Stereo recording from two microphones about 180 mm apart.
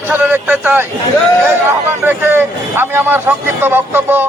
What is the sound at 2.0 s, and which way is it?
A man's voice, 10° right (ahead or behind).